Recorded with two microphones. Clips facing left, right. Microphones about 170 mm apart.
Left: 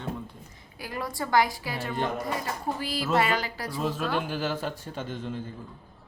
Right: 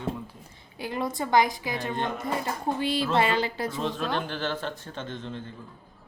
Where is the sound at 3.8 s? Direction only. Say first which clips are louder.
Left 3 dB; 5° left (ahead or behind).